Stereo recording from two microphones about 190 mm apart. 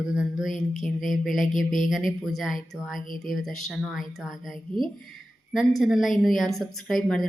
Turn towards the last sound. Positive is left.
turn(degrees=0)  # may be behind; listen again after turning